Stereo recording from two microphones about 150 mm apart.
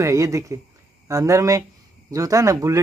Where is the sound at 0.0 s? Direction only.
20° right (ahead or behind).